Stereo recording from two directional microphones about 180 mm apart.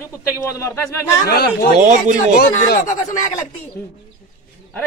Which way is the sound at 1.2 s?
60° left (ahead or behind).